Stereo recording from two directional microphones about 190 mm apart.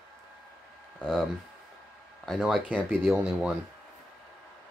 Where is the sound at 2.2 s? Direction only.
Centre (ahead or behind).